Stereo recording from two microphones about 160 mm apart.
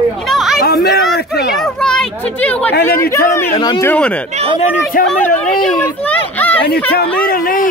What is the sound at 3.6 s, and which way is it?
Speech, 25° left (ahead or behind).